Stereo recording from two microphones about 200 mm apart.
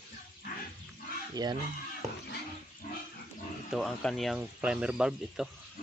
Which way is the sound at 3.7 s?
Centre (ahead or behind).